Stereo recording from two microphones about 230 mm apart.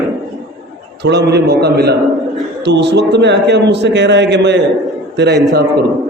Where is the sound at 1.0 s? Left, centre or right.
Right.